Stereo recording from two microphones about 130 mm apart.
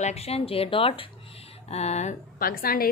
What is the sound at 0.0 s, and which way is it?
Speech, 55° left (ahead or behind).